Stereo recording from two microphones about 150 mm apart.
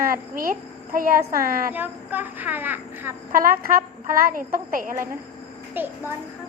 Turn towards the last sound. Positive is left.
turn(degrees=-15)  # may be behind; listen again after turning